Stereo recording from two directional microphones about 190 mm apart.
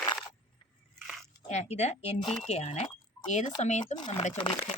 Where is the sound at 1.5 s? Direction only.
35° left (ahead or behind).